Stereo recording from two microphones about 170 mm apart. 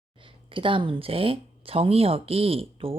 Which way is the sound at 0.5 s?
30° right (ahead or behind).